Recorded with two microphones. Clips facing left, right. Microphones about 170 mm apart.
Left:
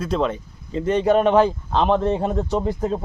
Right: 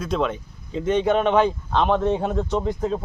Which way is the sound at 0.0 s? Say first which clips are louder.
Left 2 dB; centre (ahead or behind).